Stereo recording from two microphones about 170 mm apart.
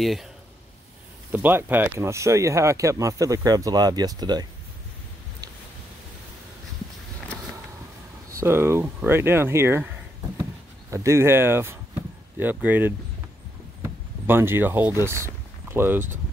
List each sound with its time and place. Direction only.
0.0 s speech: centre (ahead or behind)
1.3 s speech: 10° right (ahead or behind)
8.4 s speech: 15° right (ahead or behind)
10.9 s speech: 15° right (ahead or behind)